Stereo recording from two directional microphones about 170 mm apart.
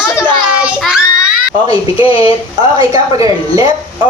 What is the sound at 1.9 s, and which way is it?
Speech, 30° left (ahead or behind).